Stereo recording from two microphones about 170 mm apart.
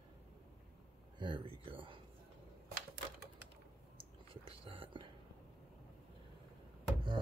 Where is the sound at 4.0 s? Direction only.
30° right (ahead or behind).